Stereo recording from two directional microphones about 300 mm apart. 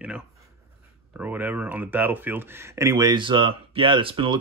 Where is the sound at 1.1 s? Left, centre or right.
Centre.